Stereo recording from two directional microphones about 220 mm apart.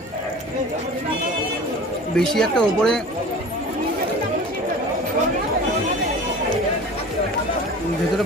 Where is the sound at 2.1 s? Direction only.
5° left (ahead or behind).